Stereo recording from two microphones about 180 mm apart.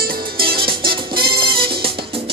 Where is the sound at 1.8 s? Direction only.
30° right (ahead or behind).